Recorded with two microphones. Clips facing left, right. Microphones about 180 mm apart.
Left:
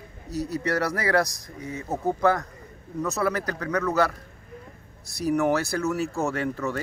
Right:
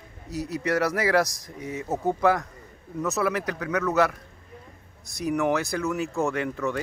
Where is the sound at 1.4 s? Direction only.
30° left (ahead or behind).